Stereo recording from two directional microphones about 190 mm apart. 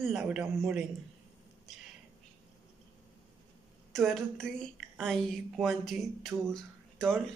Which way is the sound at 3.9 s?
Centre (ahead or behind).